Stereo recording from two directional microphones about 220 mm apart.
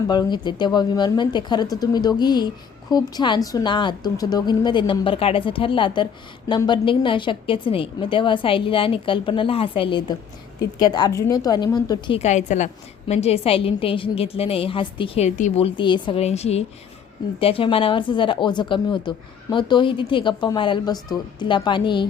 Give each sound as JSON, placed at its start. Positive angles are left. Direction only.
{"t": 0.1, "sound": "a woman's voice", "side_deg": 20}